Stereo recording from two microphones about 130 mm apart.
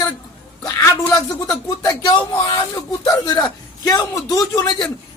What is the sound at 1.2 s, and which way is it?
A man's voice, 30° left (ahead or behind).